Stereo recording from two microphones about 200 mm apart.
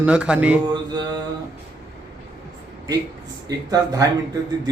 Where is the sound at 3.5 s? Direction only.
20° right (ahead or behind).